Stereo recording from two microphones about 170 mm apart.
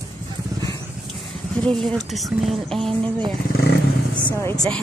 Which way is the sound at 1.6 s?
Centre (ahead or behind).